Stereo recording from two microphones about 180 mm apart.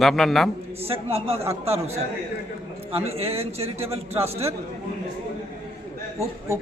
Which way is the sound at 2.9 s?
35° right (ahead or behind).